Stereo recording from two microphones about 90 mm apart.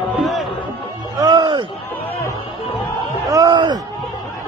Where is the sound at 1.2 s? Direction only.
55° right (ahead or behind).